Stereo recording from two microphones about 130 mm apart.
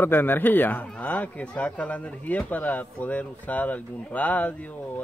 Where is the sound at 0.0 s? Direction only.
15° left (ahead or behind).